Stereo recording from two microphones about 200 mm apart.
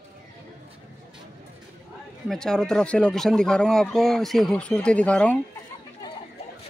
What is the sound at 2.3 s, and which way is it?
Speech, centre (ahead or behind).